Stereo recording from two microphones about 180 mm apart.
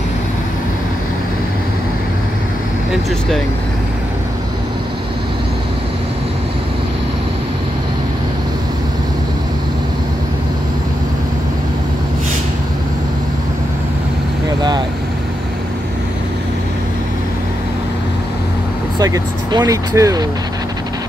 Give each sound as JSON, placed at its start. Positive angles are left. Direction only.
{"t": 18.9, "sound": "speech", "side_deg": -20}